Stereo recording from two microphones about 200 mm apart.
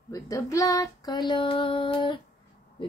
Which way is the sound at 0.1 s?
15° left (ahead or behind).